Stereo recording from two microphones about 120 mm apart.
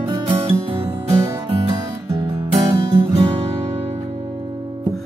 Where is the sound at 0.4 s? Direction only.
45° right (ahead or behind).